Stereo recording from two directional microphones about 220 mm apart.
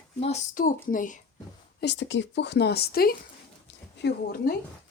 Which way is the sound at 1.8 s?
55° left (ahead or behind).